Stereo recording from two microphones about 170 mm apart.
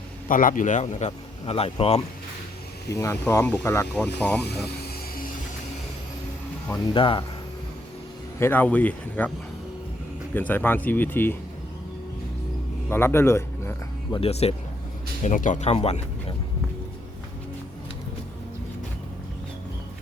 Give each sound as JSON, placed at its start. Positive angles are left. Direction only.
{"t": 0.3, "sound": "a man's voice", "side_deg": 50}
{"t": 2.9, "sound": "speech", "side_deg": 15}
{"t": 6.9, "sound": "speech", "side_deg": 30}
{"t": 8.4, "sound": "speech", "side_deg": 10}
{"t": 10.3, "sound": "speech", "side_deg": 10}
{"t": 12.9, "sound": "music", "side_deg": 15}
{"t": 14.2, "sound": "speech", "side_deg": 35}
{"t": 15.2, "sound": "a man's voice", "side_deg": 50}